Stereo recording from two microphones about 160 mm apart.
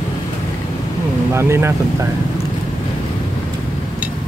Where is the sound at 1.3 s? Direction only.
15° right (ahead or behind).